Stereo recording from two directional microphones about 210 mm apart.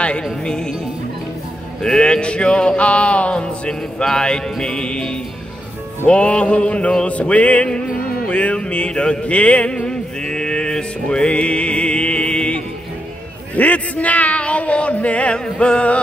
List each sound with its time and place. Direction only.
0.0 s music: 5° left (ahead or behind)
1.8 s speech: 5° left (ahead or behind)
6.0 s music: 5° left (ahead or behind)
13.6 s a sound: 5° left (ahead or behind)